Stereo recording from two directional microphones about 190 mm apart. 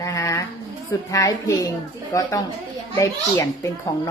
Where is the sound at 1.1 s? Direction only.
20° left (ahead or behind).